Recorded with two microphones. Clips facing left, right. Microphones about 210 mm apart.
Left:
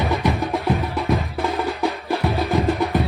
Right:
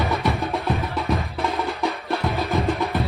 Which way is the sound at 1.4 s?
15° left (ahead or behind).